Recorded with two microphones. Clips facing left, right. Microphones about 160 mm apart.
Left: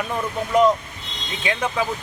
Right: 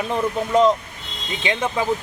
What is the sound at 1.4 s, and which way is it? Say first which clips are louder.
Speech: right 1 dB; 25° right (ahead or behind).